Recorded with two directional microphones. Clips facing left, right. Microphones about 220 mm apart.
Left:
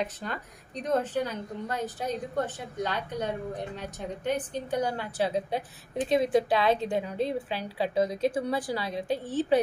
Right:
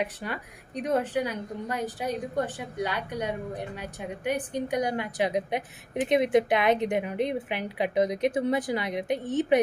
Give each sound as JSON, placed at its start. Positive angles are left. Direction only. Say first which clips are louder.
{"t": 0.0, "sound": "a woman's voice", "louder": "right 1 dB", "side_deg": -10}